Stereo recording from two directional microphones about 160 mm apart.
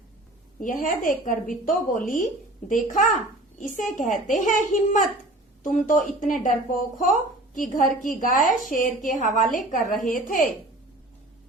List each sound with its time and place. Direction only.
0.6 s a woman's voice: 60° left (ahead or behind)